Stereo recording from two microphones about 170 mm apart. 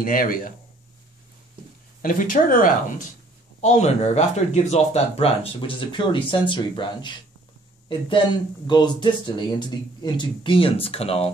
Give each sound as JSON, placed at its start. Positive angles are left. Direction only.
{"t": 0.0, "sound": "speech", "side_deg": 55}
{"t": 2.0, "sound": "speech", "side_deg": 55}
{"t": 3.6, "sound": "speech", "side_deg": 40}